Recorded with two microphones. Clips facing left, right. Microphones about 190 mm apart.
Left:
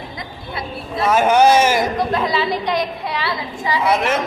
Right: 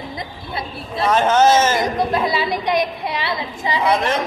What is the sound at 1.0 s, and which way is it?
Speech, 10° left (ahead or behind).